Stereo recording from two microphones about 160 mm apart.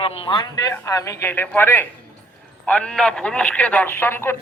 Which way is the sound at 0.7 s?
20° left (ahead or behind).